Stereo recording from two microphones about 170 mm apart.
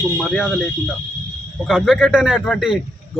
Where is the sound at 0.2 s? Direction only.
5° right (ahead or behind).